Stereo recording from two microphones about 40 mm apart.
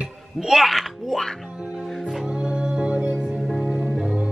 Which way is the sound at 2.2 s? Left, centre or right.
Right.